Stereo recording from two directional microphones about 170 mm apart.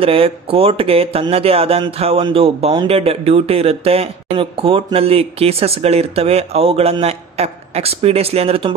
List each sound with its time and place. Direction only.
0.0 s speech: 35° right (ahead or behind)